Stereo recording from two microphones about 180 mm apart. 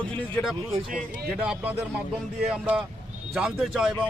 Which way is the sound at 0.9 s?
50° right (ahead or behind).